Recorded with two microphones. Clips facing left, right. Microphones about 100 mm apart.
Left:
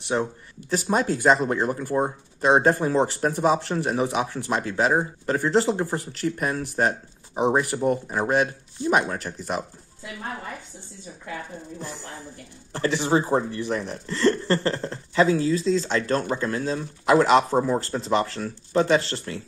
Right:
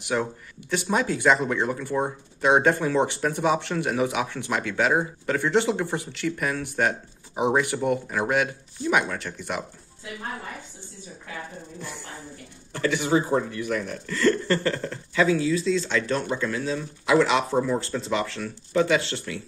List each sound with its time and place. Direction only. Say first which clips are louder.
0.0 s speech: left 1 dB; 30° left (ahead or behind)
12.7 s speech: left 1 dB; 30° left (ahead or behind)